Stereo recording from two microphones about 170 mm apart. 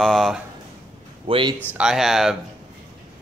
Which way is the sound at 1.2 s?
30° right (ahead or behind).